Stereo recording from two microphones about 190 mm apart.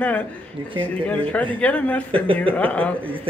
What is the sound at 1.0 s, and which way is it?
A man's voice, 5° left (ahead or behind).